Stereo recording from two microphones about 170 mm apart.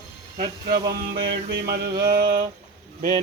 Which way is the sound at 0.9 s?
65° right (ahead or behind).